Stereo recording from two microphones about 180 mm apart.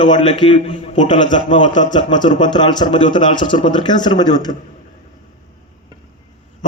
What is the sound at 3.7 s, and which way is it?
Speech, 25° left (ahead or behind).